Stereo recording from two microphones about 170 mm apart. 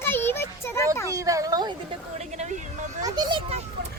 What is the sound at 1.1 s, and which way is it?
Speech, 20° right (ahead or behind).